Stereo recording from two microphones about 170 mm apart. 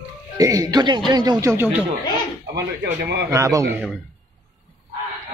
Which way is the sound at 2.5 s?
75° right (ahead or behind).